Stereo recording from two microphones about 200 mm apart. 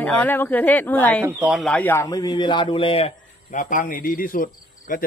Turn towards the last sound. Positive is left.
turn(degrees=40)  # may be behind; listen again after turning